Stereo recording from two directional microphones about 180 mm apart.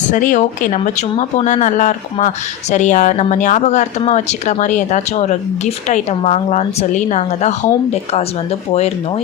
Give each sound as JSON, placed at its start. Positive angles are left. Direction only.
{"t": 0.0, "sound": "speech", "side_deg": 45}